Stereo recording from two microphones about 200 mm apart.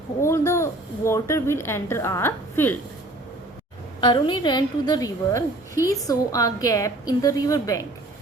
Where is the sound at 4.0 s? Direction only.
20° left (ahead or behind).